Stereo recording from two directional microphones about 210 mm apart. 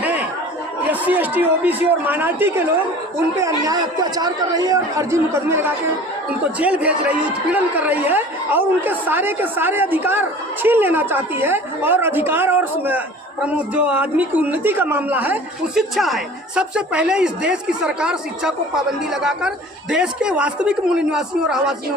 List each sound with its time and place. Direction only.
0.0 s chatter: 5° right (ahead or behind)
0.9 s a woman's voice: 10° right (ahead or behind)